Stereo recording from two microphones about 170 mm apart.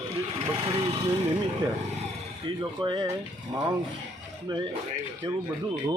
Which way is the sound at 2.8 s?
25° right (ahead or behind).